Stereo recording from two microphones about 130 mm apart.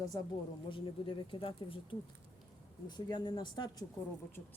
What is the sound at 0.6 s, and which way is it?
Speech, 40° left (ahead or behind).